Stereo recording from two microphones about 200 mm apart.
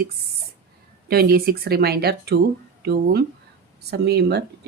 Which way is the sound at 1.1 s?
50° right (ahead or behind).